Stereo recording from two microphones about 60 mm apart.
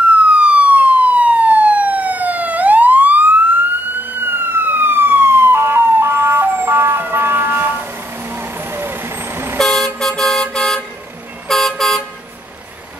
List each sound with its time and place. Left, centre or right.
0.3 s emergency vehicle: right
9.6 s vehicle: centre
11.4 s toot: centre